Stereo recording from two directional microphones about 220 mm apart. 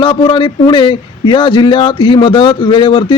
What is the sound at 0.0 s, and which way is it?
Speech, 20° left (ahead or behind).